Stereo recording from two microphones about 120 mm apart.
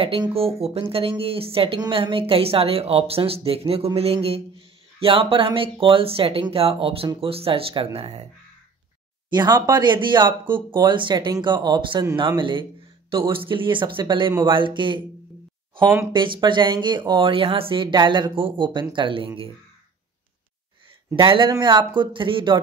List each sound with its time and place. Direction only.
0.0 s a woman's voice: 50° right (ahead or behind)
9.3 s a woman's voice: 35° right (ahead or behind)
16.1 s speech: 40° right (ahead or behind)
21.2 s speech: 45° right (ahead or behind)